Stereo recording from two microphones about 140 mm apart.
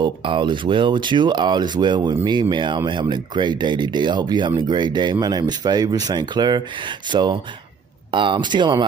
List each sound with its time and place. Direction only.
0.0 s speech: 35° right (ahead or behind)